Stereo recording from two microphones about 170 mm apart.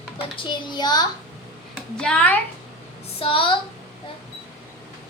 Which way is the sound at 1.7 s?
5° left (ahead or behind).